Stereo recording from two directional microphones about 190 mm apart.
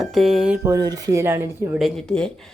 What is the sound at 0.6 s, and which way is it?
Speech, 20° right (ahead or behind).